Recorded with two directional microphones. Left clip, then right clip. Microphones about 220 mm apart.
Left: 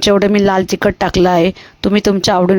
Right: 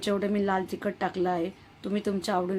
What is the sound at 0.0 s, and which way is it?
Speech, 45° left (ahead or behind).